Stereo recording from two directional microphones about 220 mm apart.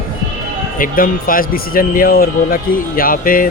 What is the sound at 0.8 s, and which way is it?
Speech, 40° left (ahead or behind).